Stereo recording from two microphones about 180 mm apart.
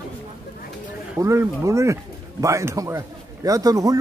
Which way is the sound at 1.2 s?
15° right (ahead or behind).